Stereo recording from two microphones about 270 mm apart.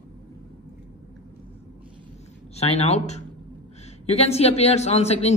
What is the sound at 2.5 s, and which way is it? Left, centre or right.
A man's voice, left.